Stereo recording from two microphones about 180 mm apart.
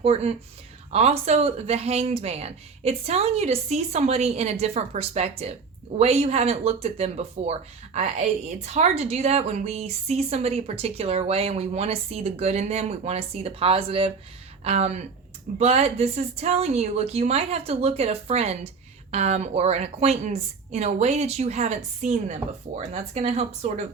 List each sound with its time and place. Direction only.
0.0 s speech: 35° right (ahead or behind)